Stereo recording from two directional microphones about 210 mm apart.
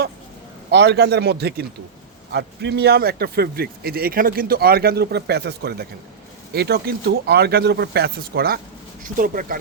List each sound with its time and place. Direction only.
0.7 s a man's voice: 55° right (ahead or behind)